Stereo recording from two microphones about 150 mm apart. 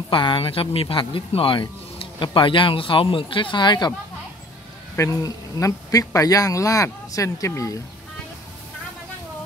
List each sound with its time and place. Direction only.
0.1 s speech: 35° left (ahead or behind)
4.9 s speech: 20° left (ahead or behind)